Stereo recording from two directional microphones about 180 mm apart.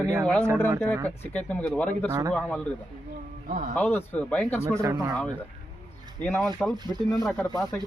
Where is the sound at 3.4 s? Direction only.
50° right (ahead or behind).